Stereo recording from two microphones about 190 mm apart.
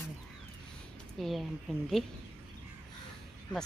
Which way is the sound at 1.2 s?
Centre (ahead or behind).